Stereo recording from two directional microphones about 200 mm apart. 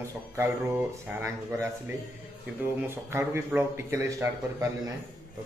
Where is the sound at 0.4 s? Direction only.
10° right (ahead or behind).